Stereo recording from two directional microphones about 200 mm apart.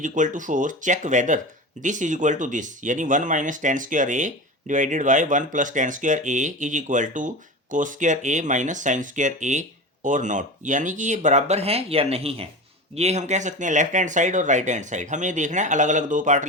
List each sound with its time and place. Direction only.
0.0 s speech: 40° right (ahead or behind)